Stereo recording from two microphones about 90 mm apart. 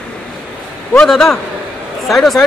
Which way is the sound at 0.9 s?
5° left (ahead or behind).